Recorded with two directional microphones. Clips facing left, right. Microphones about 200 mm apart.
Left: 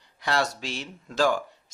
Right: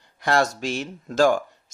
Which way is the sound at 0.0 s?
50° right (ahead or behind).